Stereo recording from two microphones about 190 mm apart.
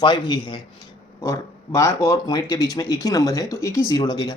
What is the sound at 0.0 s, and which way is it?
Speech, 25° left (ahead or behind).